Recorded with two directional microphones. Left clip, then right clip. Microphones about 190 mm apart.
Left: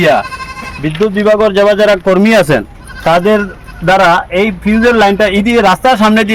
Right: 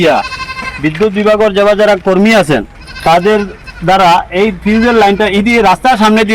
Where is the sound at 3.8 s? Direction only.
30° left (ahead or behind).